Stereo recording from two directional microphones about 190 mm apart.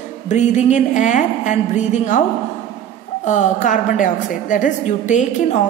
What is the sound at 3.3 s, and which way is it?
A woman's voice, 40° left (ahead or behind).